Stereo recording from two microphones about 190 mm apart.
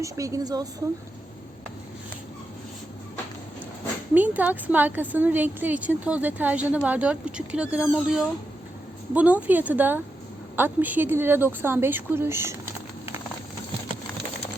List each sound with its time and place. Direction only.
0.0 s a woman's voice: 15° right (ahead or behind)
4.1 s a woman's voice: 10° right (ahead or behind)